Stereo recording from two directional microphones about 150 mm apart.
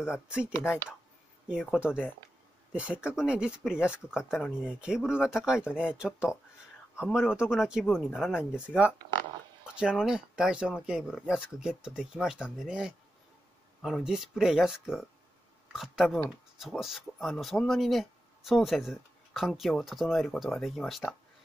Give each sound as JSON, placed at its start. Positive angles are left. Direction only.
{"t": 0.6, "sound": "speech", "side_deg": 15}
{"t": 1.5, "sound": "speech", "side_deg": -5}